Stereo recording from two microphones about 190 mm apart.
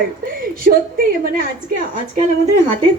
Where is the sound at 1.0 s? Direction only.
50° right (ahead or behind).